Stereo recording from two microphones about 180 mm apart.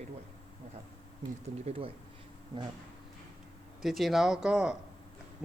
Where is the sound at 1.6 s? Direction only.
30° right (ahead or behind).